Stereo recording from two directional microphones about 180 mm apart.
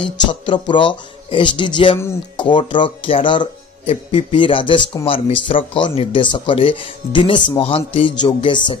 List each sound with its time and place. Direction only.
0.3 s speech: 25° left (ahead or behind)